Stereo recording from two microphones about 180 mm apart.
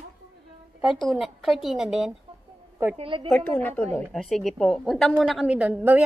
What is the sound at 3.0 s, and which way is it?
Speech, 30° right (ahead or behind).